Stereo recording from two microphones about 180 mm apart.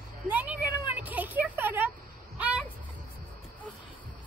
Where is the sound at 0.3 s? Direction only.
10° right (ahead or behind).